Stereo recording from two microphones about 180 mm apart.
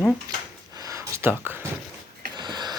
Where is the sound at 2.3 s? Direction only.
25° right (ahead or behind).